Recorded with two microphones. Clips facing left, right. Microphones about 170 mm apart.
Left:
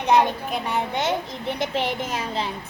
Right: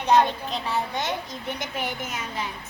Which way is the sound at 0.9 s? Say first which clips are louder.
Left 4 dB; 25° left (ahead or behind).